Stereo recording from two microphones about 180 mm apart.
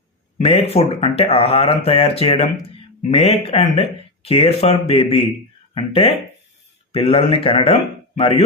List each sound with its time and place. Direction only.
0.3 s speech: 35° left (ahead or behind)